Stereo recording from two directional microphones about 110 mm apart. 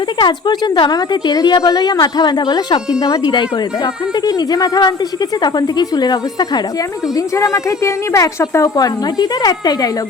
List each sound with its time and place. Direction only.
0.2 s a woman's voice: 45° left (ahead or behind)
7.3 s a woman's voice: 30° left (ahead or behind)